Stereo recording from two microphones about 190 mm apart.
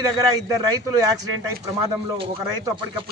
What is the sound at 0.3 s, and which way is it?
Speech, 20° right (ahead or behind).